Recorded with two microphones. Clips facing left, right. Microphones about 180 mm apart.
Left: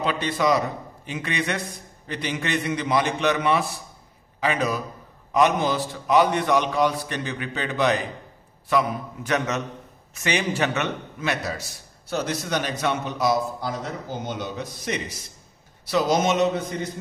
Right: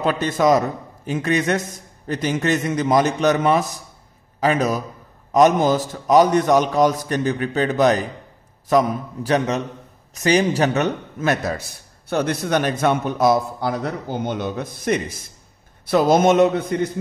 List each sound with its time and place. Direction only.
0.0 s a man's voice: 45° right (ahead or behind)